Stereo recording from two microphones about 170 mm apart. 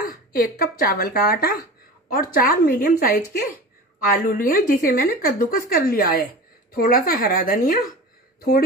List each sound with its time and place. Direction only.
0.1 s a woman's voice: 60° left (ahead or behind)